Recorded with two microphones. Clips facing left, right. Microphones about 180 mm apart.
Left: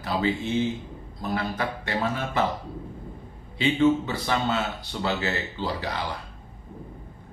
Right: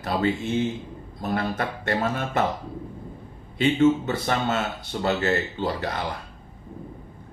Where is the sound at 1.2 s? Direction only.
50° right (ahead or behind).